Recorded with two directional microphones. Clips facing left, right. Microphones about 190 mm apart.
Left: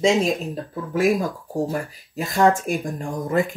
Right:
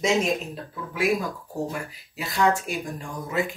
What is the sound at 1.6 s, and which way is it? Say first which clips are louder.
Speech: left 6 dB; 40° left (ahead or behind).